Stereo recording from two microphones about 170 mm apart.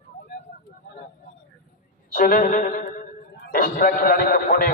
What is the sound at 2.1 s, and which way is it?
A man's voice, 55° left (ahead or behind).